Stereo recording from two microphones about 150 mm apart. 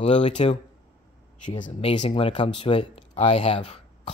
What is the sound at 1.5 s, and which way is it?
Speech, 35° left (ahead or behind).